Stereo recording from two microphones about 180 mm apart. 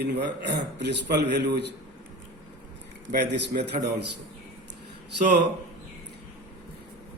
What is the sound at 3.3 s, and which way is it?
Speech, 70° right (ahead or behind).